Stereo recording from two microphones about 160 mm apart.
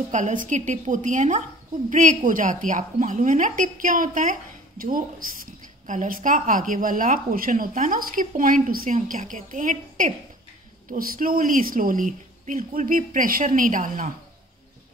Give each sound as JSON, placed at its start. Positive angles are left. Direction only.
{"t": 0.1, "sound": "a woman's voice", "side_deg": -50}